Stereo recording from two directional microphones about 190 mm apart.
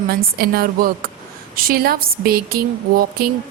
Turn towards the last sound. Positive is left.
turn(degrees=-50)  # may be behind; listen again after turning